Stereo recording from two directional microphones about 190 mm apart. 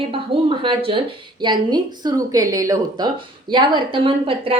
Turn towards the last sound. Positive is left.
turn(degrees=-30)  # may be behind; listen again after turning